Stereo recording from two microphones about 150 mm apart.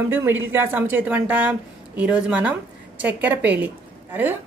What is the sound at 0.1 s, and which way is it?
Speech, 15° right (ahead or behind).